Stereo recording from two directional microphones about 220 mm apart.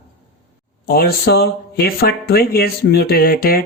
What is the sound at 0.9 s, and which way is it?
Speech, 45° left (ahead or behind).